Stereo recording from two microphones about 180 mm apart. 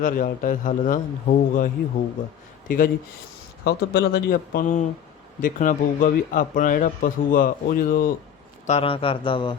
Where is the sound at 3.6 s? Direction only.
65° left (ahead or behind).